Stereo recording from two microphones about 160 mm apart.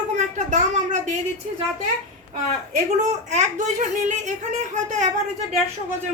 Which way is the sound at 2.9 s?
45° right (ahead or behind).